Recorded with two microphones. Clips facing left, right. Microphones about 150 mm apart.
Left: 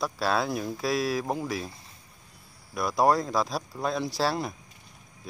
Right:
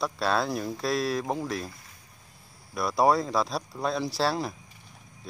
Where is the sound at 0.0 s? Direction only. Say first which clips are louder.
Even; centre (ahead or behind).